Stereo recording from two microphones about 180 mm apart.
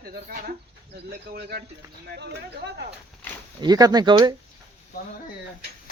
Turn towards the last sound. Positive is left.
turn(degrees=-25)  # may be behind; listen again after turning